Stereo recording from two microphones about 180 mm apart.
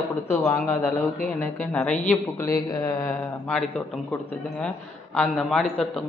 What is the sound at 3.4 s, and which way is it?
A man's voice, 5° left (ahead or behind).